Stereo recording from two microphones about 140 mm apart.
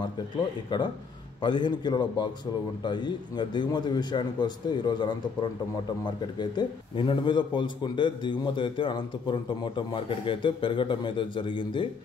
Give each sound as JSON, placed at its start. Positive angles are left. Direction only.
{"t": 1.4, "sound": "a man's voice", "side_deg": 35}